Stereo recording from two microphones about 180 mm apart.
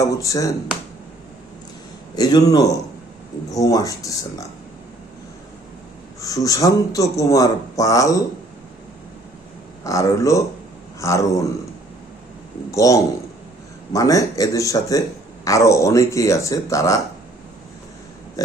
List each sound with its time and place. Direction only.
0.0 s speech: 20° left (ahead or behind)
2.1 s speech: 20° left (ahead or behind)
6.2 s speech: 20° left (ahead or behind)
9.8 s speech: 20° left (ahead or behind)
12.7 s speech: 20° left (ahead or behind)
18.4 s speech: 20° left (ahead or behind)